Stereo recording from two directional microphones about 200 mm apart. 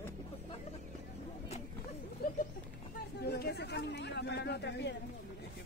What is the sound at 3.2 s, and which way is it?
Speech, 55° left (ahead or behind).